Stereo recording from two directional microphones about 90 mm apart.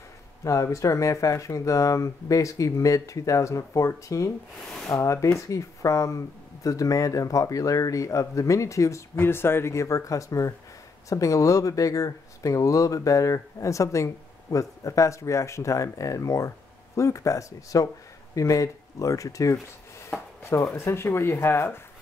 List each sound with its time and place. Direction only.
0.4 s speech: 35° left (ahead or behind)